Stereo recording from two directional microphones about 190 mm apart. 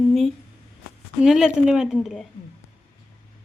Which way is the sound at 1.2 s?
Centre (ahead or behind).